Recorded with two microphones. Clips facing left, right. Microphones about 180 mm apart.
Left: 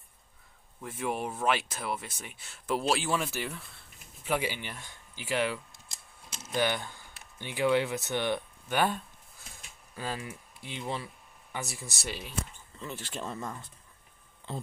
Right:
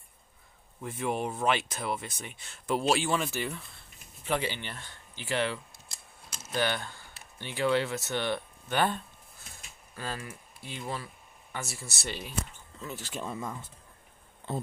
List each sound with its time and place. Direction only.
0.8 s speech: 5° left (ahead or behind)
13.1 s speech: 5° right (ahead or behind)